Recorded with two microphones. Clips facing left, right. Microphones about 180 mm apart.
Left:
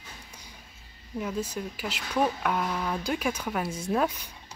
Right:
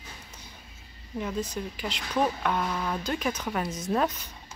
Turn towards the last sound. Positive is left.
turn(degrees=10)  # may be behind; listen again after turning